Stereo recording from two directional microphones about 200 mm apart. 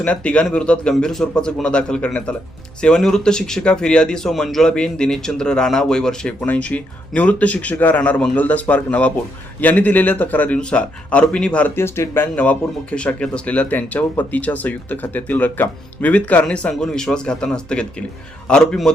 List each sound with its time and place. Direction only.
0.0 s speech: 5° left (ahead or behind)